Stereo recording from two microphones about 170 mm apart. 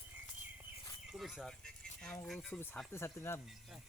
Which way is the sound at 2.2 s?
Centre (ahead or behind).